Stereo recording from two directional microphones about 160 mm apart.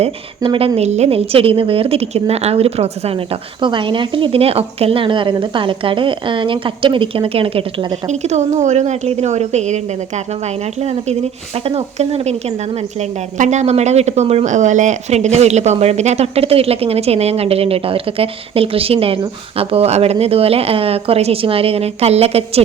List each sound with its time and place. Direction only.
0.0 s a woman's voice: 35° right (ahead or behind)
8.0 s a woman's voice: 45° right (ahead or behind)